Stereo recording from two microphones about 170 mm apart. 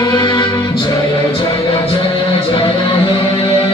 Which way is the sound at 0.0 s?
20° left (ahead or behind).